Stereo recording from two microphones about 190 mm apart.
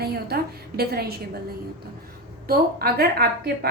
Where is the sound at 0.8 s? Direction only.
55° right (ahead or behind).